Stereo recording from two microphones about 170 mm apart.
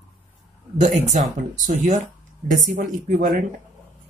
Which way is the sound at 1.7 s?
45° right (ahead or behind).